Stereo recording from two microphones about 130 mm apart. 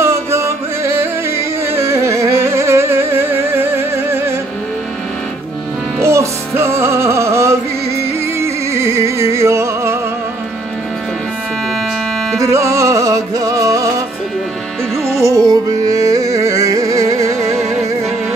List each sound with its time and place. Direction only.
0.0 s music: 20° right (ahead or behind)
6.0 s music: 20° right (ahead or behind)
12.4 s music: 25° right (ahead or behind)
15.1 s music: 25° right (ahead or behind)